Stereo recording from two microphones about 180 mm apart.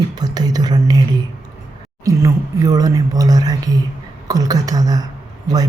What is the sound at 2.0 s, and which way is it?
Speech, 20° right (ahead or behind).